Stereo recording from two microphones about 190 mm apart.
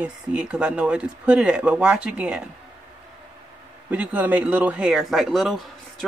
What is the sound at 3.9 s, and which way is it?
Speech, 10° right (ahead or behind).